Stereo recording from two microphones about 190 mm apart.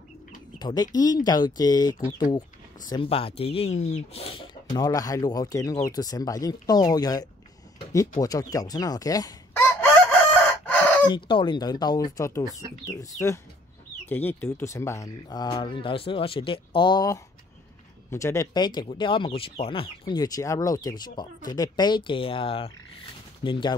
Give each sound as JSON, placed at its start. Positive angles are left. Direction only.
{"t": 0.6, "sound": "speech", "side_deg": 20}
{"t": 4.7, "sound": "speech", "side_deg": 20}
{"t": 8.2, "sound": "crowing", "side_deg": 20}
{"t": 10.6, "sound": "chicken", "side_deg": 10}
{"t": 11.1, "sound": "speech", "side_deg": 25}